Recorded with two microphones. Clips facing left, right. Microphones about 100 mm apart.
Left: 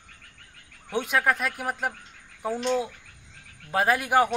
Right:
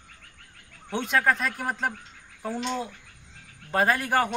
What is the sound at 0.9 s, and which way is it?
A man's voice, 10° left (ahead or behind).